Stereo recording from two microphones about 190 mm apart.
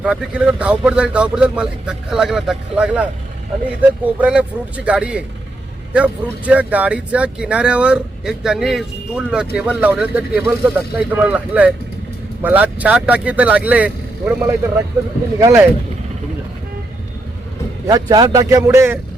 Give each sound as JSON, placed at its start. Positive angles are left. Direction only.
{"t": 0.0, "sound": "speech", "side_deg": -5}
{"t": 17.8, "sound": "speech", "side_deg": -20}